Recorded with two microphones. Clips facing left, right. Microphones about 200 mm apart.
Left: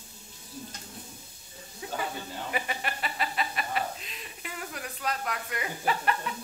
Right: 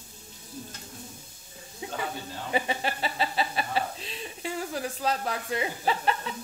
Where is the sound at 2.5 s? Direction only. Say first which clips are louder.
Right 6 dB; 30° right (ahead or behind).